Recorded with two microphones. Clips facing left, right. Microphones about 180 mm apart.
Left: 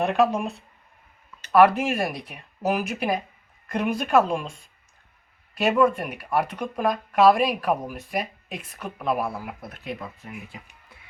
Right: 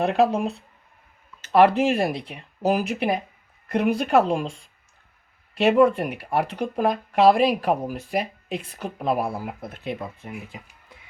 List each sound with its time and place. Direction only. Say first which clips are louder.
0.0 s speech: right 1 dB; 30° right (ahead or behind)
1.5 s speech: right 1 dB; 30° right (ahead or behind)
5.6 s speech: right 3 dB; 30° right (ahead or behind)